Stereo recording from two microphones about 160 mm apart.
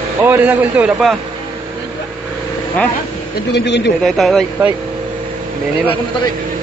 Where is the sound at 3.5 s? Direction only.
90° left.